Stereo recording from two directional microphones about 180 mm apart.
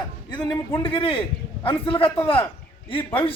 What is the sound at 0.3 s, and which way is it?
A man's voice, 25° left (ahead or behind).